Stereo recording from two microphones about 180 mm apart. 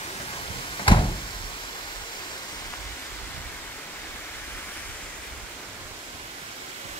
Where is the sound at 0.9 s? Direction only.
30° left (ahead or behind).